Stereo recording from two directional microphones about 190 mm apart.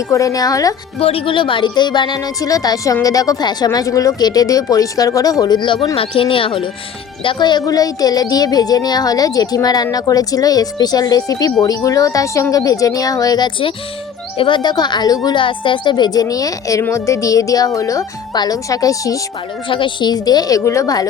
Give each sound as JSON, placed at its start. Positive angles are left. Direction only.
{"t": 0.1, "sound": "speech", "side_deg": 15}
{"t": 0.9, "sound": "a woman's voice", "side_deg": 30}